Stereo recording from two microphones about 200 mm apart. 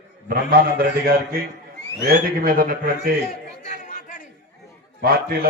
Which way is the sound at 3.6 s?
40° left (ahead or behind).